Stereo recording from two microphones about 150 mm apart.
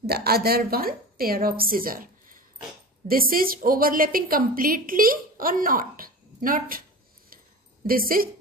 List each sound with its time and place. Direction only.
0.0 s a woman's voice: 90° right; by 6.8 s 70° right (ahead or behind)
7.8 s a woman's voice: 75° right (ahead or behind)